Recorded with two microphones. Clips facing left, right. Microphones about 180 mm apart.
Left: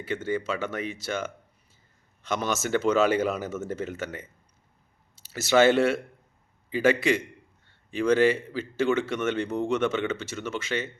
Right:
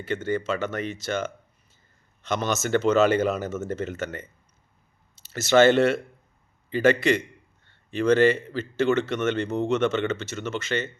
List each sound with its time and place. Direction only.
0.3 s speech: 10° left (ahead or behind)
5.3 s a man's voice: 5° left (ahead or behind)